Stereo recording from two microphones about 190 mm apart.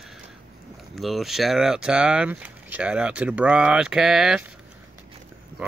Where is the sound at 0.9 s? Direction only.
Centre (ahead or behind).